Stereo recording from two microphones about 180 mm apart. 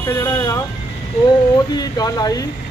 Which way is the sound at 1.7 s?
20° left (ahead or behind).